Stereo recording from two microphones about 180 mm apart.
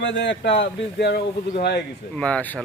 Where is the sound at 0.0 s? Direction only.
85° left; by 1.8 s 65° left (ahead or behind).